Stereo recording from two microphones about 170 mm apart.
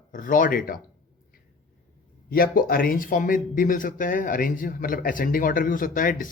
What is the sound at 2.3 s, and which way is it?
Speech, 60° left (ahead or behind).